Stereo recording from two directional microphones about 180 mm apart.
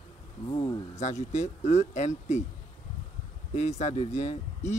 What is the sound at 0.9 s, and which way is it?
Speech, 40° left (ahead or behind).